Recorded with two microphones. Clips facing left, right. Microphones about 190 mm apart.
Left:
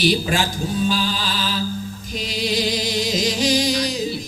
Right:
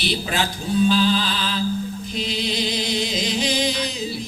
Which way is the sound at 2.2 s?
45° left (ahead or behind).